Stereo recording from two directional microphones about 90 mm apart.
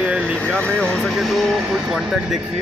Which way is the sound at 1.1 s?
Centre (ahead or behind).